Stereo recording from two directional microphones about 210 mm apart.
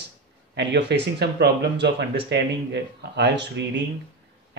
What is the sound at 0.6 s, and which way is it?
Speech, 55° right (ahead or behind).